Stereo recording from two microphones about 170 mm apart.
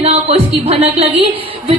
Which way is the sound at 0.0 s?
35° right (ahead or behind).